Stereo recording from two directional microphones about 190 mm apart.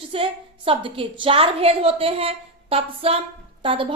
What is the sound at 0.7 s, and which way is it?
A woman's voice, 30° right (ahead or behind).